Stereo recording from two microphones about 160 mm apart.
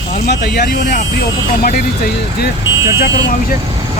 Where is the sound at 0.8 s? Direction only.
55° left (ahead or behind).